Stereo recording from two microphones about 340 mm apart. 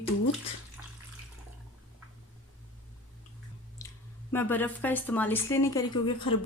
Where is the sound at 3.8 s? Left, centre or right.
Centre.